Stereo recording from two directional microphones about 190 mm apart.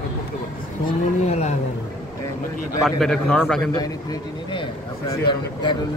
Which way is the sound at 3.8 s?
20° left (ahead or behind).